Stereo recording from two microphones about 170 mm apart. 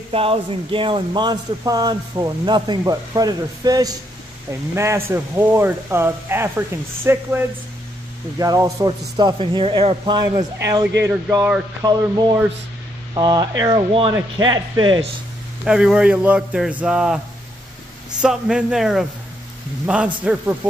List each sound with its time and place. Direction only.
0.1 s a man's voice: 35° right (ahead or behind); by 11.6 s 10° right (ahead or behind)
11.8 s a man's voice: 25° right (ahead or behind)
15.6 s a man's voice: 5° right (ahead or behind)
18.2 s a man's voice: 5° right (ahead or behind)
20.2 s speech: 10° right (ahead or behind)